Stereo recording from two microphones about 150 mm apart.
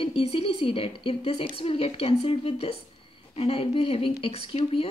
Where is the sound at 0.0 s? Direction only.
40° left (ahead or behind).